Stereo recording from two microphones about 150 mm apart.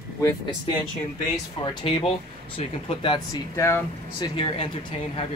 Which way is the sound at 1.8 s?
40° left (ahead or behind).